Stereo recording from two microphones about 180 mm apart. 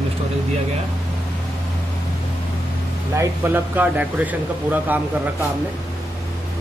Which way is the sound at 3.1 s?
10° right (ahead or behind).